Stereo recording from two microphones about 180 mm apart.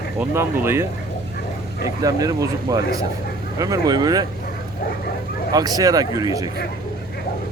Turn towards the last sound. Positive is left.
turn(degrees=-20)  # may be behind; listen again after turning